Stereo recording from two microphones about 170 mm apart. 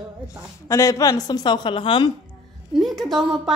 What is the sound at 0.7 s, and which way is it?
A woman's voice, 20° left (ahead or behind).